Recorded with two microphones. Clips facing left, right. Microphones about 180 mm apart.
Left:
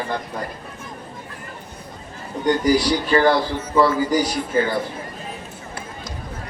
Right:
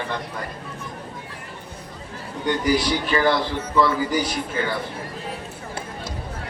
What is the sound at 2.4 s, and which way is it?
A man's voice, 40° left (ahead or behind).